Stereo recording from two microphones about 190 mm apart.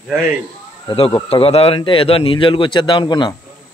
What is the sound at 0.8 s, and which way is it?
Speech, 30° left (ahead or behind).